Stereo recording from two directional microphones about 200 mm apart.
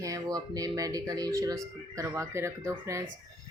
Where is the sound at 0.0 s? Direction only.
20° right (ahead or behind).